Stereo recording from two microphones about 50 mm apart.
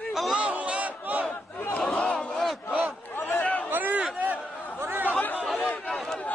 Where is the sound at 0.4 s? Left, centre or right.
Right.